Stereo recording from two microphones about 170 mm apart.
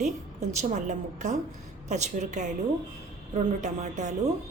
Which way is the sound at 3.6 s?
45° right (ahead or behind).